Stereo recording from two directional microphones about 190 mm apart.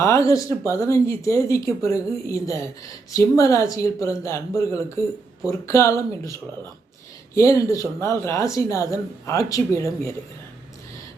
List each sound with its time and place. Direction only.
0.0 s speech: 15° left (ahead or behind)
7.3 s speech: 15° left (ahead or behind)